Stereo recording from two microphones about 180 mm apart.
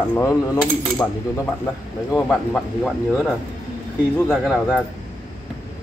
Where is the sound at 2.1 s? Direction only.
5° left (ahead or behind).